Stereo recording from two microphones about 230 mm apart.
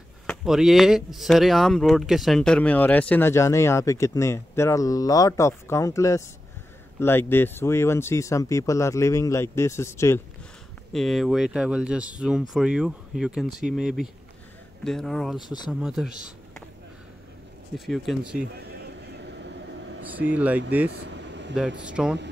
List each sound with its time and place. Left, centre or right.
0.3 s speech: centre
10.9 s speech: centre
15.4 s speech: centre
15.8 s speech: centre
17.7 s speech: centre
18.4 s a sound: right
20.3 s speech: centre
20.9 s air conditioning: right
21.9 s speech: centre